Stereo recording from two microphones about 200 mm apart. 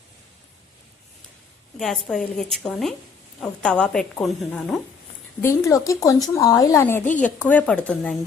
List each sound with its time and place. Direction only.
1.8 s a woman's voice: centre (ahead or behind)
5.4 s a woman's voice: 15° left (ahead or behind)